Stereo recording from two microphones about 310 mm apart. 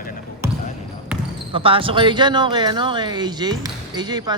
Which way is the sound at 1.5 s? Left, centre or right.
Centre.